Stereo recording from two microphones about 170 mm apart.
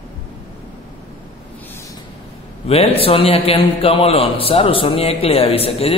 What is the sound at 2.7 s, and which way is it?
A man's voice, 35° left (ahead or behind).